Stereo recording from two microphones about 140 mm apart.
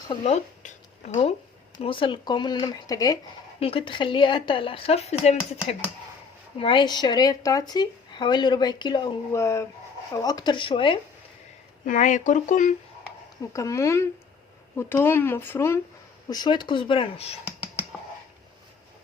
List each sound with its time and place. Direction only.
0.3 s speech: 55° left (ahead or behind)
1.8 s speech: 40° left (ahead or behind)
3.6 s speech: 40° left (ahead or behind)
6.6 s speech: 35° left (ahead or behind)
9.3 s speech: 20° left (ahead or behind); by 11.0 s 40° left (ahead or behind)
11.9 s speech: 60° left (ahead or behind)
13.4 s speech: 25° left (ahead or behind)
16.3 s speech: 30° left (ahead or behind)